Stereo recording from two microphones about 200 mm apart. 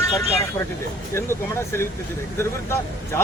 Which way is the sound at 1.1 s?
10° left (ahead or behind).